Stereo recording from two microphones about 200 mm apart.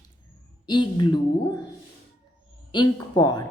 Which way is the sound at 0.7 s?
20° left (ahead or behind).